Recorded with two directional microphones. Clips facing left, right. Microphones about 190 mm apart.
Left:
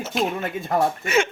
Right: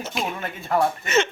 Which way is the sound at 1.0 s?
10° left (ahead or behind).